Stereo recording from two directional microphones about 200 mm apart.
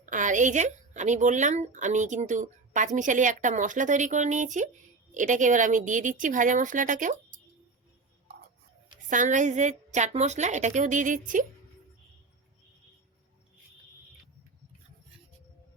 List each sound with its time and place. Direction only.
0.0 s speech: 40° right (ahead or behind)
9.0 s speech: 40° right (ahead or behind)